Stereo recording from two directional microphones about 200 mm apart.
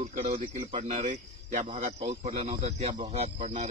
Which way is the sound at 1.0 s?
40° right (ahead or behind).